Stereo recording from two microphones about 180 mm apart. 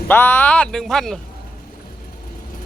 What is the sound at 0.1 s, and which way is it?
Speech, 10° left (ahead or behind).